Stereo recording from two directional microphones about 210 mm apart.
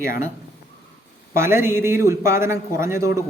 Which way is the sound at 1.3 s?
10° right (ahead or behind).